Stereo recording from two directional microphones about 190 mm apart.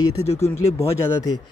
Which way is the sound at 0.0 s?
15° left (ahead or behind).